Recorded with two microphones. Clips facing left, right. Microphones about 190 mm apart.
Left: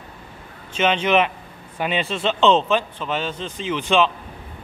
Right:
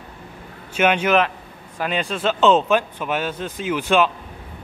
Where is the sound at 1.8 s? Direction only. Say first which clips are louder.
Even; centre (ahead or behind).